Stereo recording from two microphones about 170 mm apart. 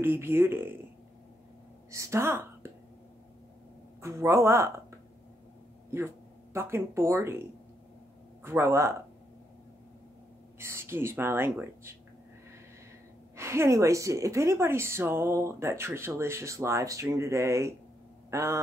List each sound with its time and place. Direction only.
0.0 s a woman's voice: 15° right (ahead or behind)
1.9 s a woman's voice: 15° right (ahead or behind)
4.0 s a woman's voice: 15° right (ahead or behind)
5.9 s a woman's voice: 15° right (ahead or behind)
10.6 s a woman's voice: 15° right (ahead or behind)
13.4 s a woman's voice: 15° right (ahead or behind)